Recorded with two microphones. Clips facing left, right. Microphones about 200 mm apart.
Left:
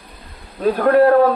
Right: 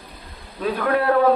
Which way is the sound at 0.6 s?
40° left (ahead or behind).